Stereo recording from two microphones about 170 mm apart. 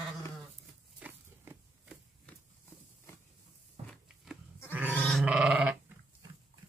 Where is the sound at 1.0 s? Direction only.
10° right (ahead or behind).